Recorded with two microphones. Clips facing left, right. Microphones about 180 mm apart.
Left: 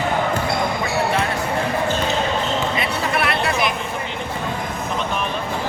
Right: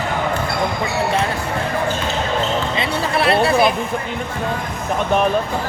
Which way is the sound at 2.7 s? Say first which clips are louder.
Right 2 dB; 30° right (ahead or behind).